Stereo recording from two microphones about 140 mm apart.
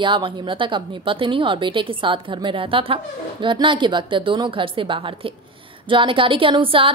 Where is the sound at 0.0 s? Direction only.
35° right (ahead or behind).